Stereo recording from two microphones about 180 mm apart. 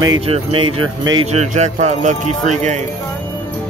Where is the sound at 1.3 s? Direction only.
40° right (ahead or behind).